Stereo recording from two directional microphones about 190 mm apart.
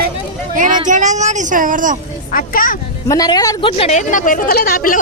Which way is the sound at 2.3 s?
45° left (ahead or behind).